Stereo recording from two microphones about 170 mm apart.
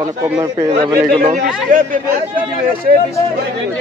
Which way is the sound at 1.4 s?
55° right (ahead or behind).